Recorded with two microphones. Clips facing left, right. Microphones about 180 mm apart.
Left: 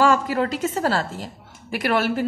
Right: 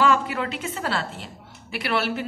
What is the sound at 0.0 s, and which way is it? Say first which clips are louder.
A woman's voice: left 3 dB; 40° left (ahead or behind).